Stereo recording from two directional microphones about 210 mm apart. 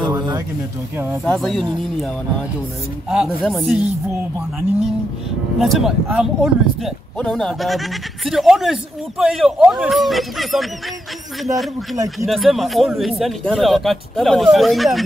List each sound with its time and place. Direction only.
0.9 s speech: 10° right (ahead or behind)
1.2 s speech: centre (ahead or behind)
3.1 s speech: 5° right (ahead or behind)
5.6 s speech: centre (ahead or behind)